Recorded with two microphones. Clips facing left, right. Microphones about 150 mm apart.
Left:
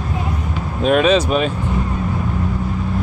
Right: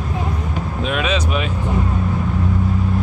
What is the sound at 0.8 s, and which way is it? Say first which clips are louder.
Speech: left 8 dB; 40° left (ahead or behind).